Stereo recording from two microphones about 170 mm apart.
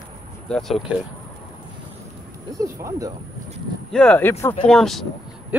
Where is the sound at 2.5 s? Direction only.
20° right (ahead or behind).